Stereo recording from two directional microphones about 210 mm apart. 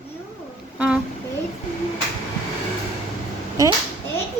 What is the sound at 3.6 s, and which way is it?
Speech, 15° right (ahead or behind).